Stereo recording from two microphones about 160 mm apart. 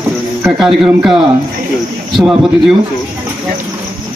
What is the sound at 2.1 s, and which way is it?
Speech, centre (ahead or behind).